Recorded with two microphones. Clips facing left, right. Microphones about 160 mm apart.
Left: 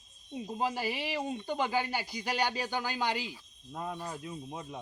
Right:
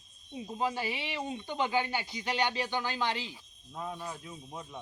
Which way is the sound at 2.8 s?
10° left (ahead or behind).